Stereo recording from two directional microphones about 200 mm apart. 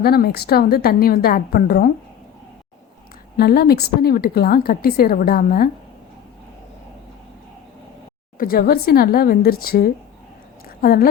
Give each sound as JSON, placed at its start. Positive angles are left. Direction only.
{"t": 0.0, "sound": "speech", "side_deg": 50}
{"t": 3.3, "sound": "speech", "side_deg": 50}
{"t": 8.4, "sound": "speech", "side_deg": 45}